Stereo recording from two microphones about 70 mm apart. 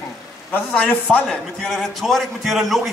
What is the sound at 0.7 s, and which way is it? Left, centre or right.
A man's voice, centre.